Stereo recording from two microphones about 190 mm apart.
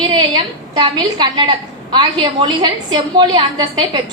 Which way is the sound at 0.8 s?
25° right (ahead or behind).